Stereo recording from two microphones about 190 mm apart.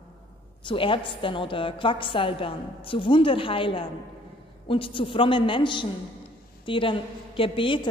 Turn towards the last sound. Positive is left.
turn(degrees=25)  # may be behind; listen again after turning